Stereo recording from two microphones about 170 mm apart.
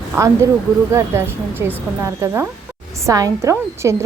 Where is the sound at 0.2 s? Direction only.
15° right (ahead or behind).